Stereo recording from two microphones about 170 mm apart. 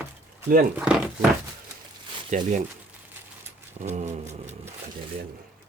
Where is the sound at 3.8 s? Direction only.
40° right (ahead or behind).